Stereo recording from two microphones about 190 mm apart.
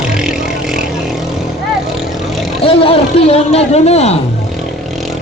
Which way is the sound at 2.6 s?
30° left (ahead or behind).